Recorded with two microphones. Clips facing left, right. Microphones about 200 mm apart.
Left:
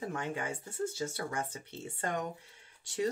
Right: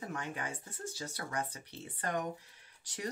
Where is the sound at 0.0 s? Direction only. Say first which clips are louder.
Left 4 dB; 25° left (ahead or behind).